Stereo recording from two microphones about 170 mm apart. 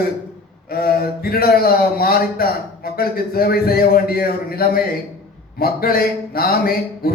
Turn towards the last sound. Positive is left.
turn(degrees=60)  # may be behind; listen again after turning